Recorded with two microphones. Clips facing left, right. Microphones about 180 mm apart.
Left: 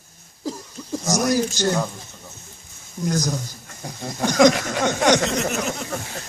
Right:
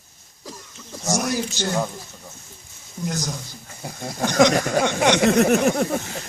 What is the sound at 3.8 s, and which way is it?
Speech, 5° right (ahead or behind).